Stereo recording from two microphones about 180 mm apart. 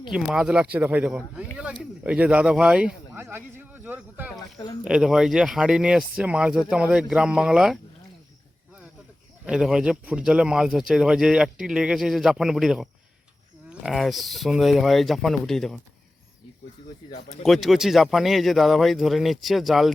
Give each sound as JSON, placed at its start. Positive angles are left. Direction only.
{"t": 0.1, "sound": "speech", "side_deg": -5}
{"t": 4.5, "sound": "speech", "side_deg": 20}
{"t": 4.8, "sound": "speech", "side_deg": -5}
{"t": 9.5, "sound": "speech", "side_deg": -5}
{"t": 17.4, "sound": "speech", "side_deg": 0}